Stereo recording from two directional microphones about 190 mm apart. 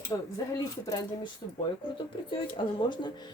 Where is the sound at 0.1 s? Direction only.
15° left (ahead or behind).